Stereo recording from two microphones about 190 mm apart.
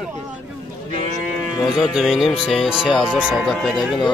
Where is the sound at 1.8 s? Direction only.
Centre (ahead or behind).